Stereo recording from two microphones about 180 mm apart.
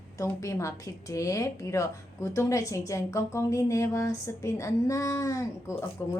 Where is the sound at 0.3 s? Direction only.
15° left (ahead or behind).